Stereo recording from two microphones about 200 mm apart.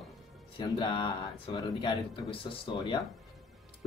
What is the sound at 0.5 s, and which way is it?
Speech, 20° left (ahead or behind).